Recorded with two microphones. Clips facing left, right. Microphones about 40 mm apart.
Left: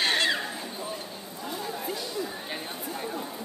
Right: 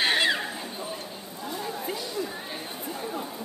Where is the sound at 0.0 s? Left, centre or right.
Centre.